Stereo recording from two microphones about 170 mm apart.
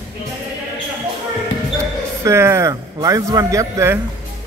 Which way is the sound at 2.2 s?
15° right (ahead or behind).